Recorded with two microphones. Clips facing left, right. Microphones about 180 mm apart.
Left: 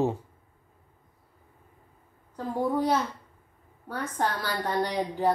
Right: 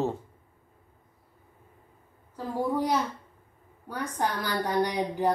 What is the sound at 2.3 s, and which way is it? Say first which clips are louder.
A woman's voice: left 1 dB; 10° right (ahead or behind).